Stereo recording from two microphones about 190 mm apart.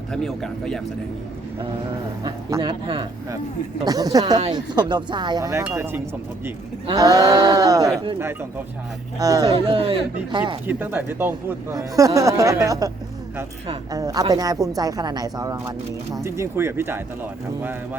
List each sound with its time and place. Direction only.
0.1 s speech: 5° left (ahead or behind)
2.2 s speech: 20° right (ahead or behind)
9.5 s speech: 30° right (ahead or behind)
10.7 s speech: 10° right (ahead or behind)
13.9 s speech: 20° right (ahead or behind)